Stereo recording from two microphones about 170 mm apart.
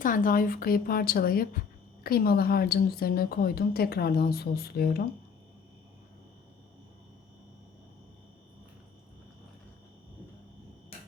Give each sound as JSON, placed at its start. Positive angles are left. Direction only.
{"t": 0.0, "sound": "a woman's voice", "side_deg": 50}